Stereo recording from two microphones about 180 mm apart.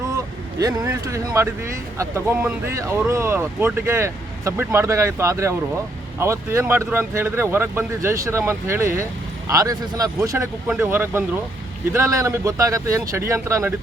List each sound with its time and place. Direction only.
0.6 s speech: 20° right (ahead or behind)